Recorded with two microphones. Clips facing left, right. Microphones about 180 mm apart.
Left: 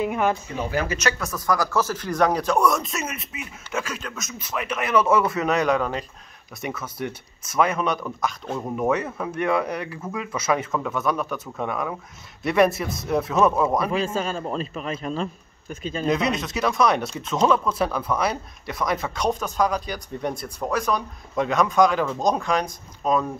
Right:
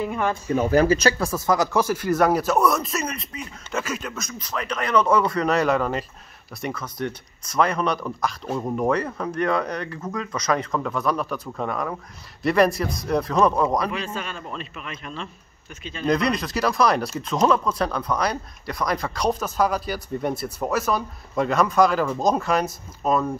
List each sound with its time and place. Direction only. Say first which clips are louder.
0.0 s speech: left 2 dB; 15° left (ahead or behind)
0.7 s speech: right 6 dB; 35° right (ahead or behind); by 13.8 s 5° left (ahead or behind)
13.8 s a man's voice: left 5 dB; 30° left (ahead or behind)
16.1 s speech: right 2 dB; centre (ahead or behind)